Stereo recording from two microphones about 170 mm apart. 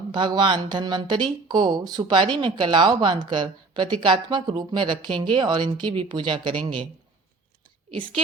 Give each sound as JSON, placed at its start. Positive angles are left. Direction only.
{"t": 0.1, "sound": "speech", "side_deg": -25}